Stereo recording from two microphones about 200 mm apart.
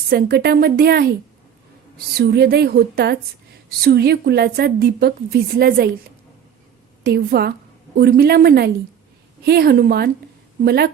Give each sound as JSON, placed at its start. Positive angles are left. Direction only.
{"t": 0.1, "sound": "a woman's voice", "side_deg": -55}
{"t": 2.1, "sound": "a woman's voice", "side_deg": -55}
{"t": 7.0, "sound": "a woman's voice", "side_deg": -50}